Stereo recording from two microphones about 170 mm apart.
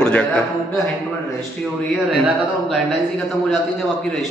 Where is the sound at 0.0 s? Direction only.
10° left (ahead or behind).